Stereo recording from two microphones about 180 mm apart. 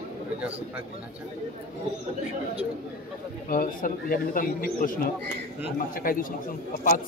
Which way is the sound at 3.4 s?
50° left (ahead or behind).